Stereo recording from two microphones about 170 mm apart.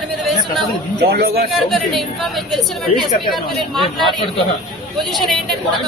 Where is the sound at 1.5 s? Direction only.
Centre (ahead or behind).